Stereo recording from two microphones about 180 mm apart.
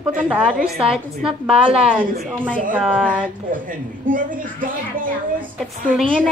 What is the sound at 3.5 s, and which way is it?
A woman's voice, 50° right (ahead or behind).